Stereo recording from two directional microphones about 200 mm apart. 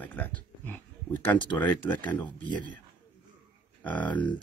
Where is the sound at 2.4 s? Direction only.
25° left (ahead or behind).